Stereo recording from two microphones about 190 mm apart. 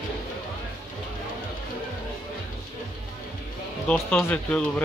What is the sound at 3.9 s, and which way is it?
Speech, 10° left (ahead or behind).